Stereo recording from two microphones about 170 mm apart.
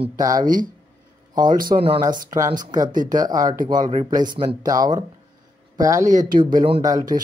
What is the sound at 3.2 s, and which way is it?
Speech, 25° right (ahead or behind).